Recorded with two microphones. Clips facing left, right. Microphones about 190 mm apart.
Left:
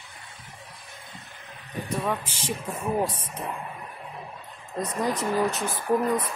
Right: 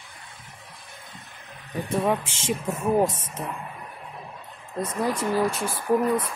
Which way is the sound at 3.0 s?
45° right (ahead or behind).